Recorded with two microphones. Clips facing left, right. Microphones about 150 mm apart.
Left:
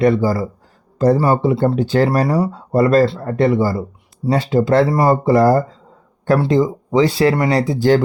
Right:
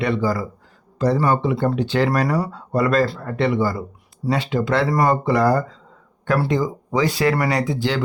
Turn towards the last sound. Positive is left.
turn(degrees=40)  # may be behind; listen again after turning